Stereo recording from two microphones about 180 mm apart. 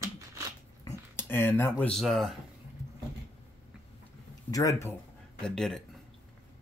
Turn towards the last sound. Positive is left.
turn(degrees=0)  # may be behind; listen again after turning